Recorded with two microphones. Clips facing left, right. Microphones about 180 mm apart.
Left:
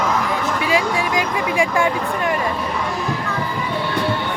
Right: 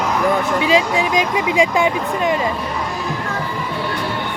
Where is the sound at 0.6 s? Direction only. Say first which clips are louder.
Right 1 dB; 20° right (ahead or behind).